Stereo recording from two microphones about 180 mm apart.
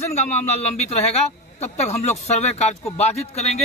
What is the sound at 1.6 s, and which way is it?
Speech, 40° left (ahead or behind).